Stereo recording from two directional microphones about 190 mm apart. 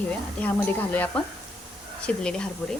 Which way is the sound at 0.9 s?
10° left (ahead or behind).